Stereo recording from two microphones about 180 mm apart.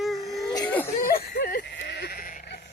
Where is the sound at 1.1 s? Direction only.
60° left (ahead or behind).